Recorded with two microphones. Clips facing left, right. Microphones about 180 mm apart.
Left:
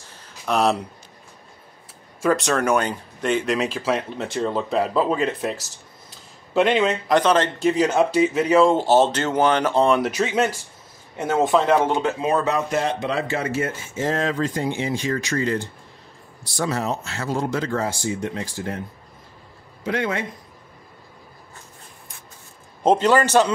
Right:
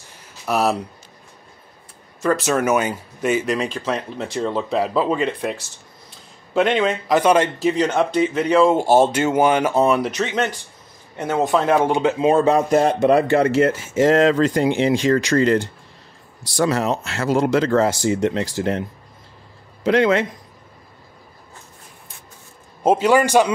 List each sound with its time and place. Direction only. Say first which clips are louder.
0.5 s speech: even; 5° right (ahead or behind)
2.2 s speech: right 1 dB; 5° right (ahead or behind)
7.2 s speech: right 2 dB; 10° right (ahead or behind)
8.7 s speech: right 2 dB; 10° right (ahead or behind); by 12.6 s 30° right (ahead or behind)
12.7 s speech: right 8 dB; 50° right (ahead or behind); by 15.7 s 75° right (ahead or behind)
16.5 s speech: right 5 dB; 90° right
22.8 s speech: right 2 dB; 10° right (ahead or behind)